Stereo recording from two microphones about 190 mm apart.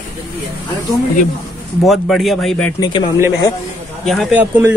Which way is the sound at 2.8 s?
25° left (ahead or behind).